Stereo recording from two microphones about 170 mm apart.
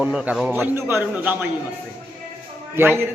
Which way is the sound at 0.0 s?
5° right (ahead or behind).